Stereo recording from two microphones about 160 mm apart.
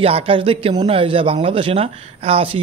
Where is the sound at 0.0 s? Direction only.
35° right (ahead or behind).